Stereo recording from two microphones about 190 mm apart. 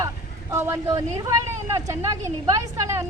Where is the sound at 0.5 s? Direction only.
15° right (ahead or behind).